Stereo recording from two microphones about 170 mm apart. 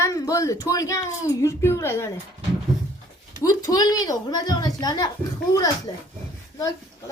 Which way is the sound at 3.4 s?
20° left (ahead or behind).